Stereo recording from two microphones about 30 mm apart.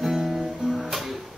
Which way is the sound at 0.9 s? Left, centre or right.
Centre.